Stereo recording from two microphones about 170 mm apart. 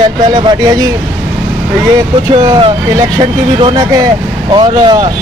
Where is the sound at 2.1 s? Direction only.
25° right (ahead or behind).